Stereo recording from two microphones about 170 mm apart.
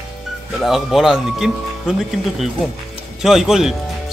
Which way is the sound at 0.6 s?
Centre (ahead or behind).